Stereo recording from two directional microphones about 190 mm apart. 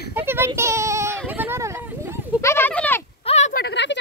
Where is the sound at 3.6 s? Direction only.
65° left (ahead or behind).